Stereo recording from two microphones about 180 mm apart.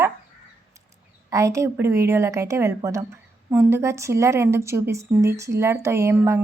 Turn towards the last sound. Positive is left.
turn(degrees=-15)  # may be behind; listen again after turning